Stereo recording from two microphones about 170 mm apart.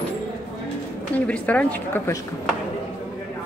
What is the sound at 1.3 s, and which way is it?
Speech, 10° left (ahead or behind).